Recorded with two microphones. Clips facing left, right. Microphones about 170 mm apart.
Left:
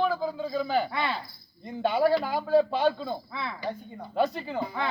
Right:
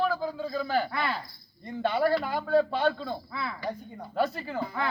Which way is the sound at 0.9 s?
20° left (ahead or behind).